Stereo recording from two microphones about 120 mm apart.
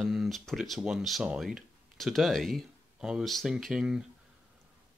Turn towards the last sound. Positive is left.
turn(degrees=-5)  # may be behind; listen again after turning